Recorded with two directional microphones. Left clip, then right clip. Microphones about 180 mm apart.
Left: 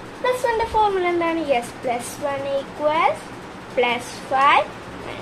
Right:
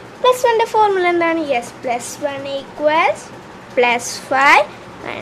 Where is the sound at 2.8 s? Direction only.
25° right (ahead or behind).